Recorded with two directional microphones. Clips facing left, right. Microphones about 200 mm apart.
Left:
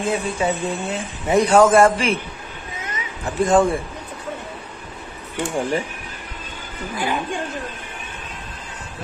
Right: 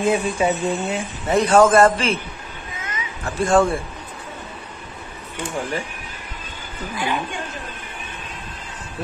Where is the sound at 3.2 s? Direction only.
15° left (ahead or behind).